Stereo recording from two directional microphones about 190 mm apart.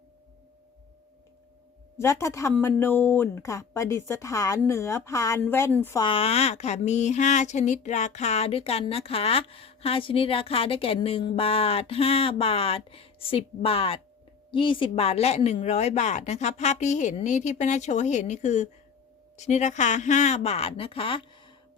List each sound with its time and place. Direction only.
2.0 s a woman's voice: 15° left (ahead or behind)
6.0 s speech: 30° left (ahead or behind)